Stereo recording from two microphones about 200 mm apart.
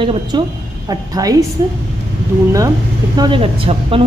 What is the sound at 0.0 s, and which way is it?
A woman's voice, 25° right (ahead or behind).